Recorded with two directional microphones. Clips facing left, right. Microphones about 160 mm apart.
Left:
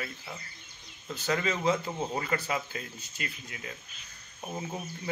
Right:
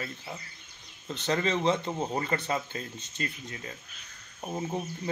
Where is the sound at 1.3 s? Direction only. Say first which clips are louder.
Right 2 dB; 30° right (ahead or behind).